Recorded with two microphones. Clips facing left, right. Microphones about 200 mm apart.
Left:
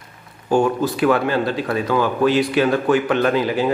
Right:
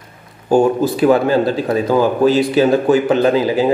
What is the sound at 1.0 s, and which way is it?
Speech, 35° right (ahead or behind).